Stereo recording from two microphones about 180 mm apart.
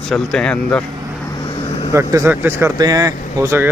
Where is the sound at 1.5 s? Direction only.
35° left (ahead or behind).